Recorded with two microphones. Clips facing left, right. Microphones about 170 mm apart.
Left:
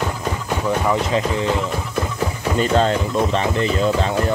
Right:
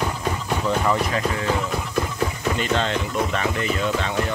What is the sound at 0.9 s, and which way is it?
Speech, 25° left (ahead or behind).